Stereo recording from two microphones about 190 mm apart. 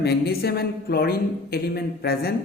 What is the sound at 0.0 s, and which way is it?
A woman's voice, 60° left (ahead or behind).